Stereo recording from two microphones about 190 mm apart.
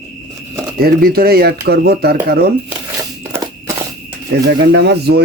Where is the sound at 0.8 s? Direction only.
50° right (ahead or behind).